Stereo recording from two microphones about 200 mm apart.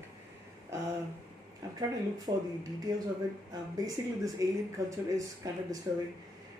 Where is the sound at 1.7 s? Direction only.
20° right (ahead or behind).